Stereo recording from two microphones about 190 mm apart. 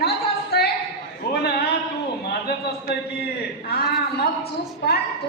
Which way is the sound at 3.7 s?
55° left (ahead or behind).